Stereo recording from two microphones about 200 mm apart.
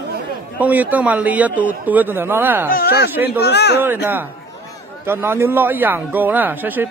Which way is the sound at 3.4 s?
55° left (ahead or behind).